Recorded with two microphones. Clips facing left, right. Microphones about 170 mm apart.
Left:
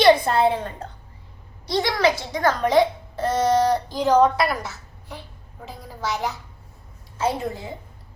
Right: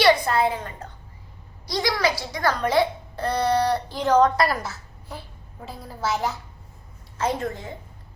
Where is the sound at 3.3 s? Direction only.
20° left (ahead or behind).